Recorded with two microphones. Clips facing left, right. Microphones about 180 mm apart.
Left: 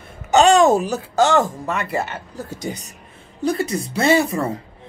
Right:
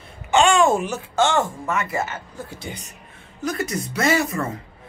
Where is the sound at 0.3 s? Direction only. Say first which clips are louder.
Left 4 dB; 40° left (ahead or behind).